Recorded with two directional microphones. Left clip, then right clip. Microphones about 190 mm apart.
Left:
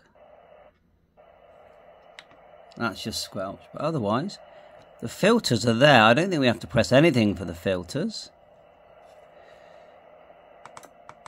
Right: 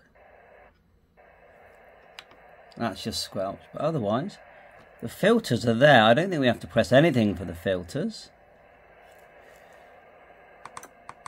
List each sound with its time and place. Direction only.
2.7 s speech: 15° left (ahead or behind)